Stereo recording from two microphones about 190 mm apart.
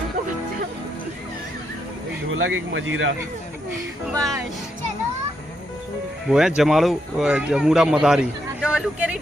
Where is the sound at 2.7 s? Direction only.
85° right.